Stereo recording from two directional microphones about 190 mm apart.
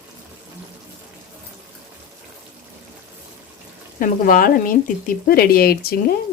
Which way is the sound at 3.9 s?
45° left (ahead or behind).